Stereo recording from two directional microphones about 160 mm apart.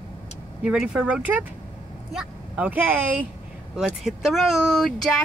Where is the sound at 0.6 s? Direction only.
5° right (ahead or behind).